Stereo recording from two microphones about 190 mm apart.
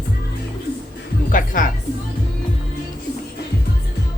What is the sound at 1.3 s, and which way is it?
Speech, 45° left (ahead or behind).